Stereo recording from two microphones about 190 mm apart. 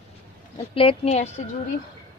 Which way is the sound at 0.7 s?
30° left (ahead or behind).